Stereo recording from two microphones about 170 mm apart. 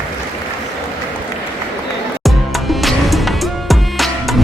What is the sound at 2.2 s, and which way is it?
Music, centre (ahead or behind).